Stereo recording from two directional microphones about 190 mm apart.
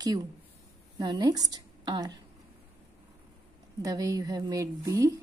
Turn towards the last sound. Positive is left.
turn(degrees=-20)  # may be behind; listen again after turning